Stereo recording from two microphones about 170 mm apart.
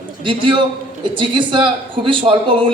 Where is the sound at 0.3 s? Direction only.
30° right (ahead or behind).